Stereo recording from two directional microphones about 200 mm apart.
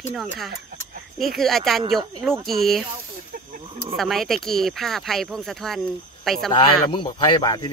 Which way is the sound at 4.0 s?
Centre (ahead or behind).